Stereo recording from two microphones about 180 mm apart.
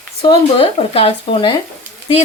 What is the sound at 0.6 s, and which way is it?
Speech, 35° left (ahead or behind).